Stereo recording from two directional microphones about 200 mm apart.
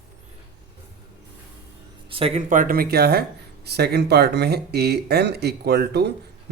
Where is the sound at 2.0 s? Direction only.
30° right (ahead or behind).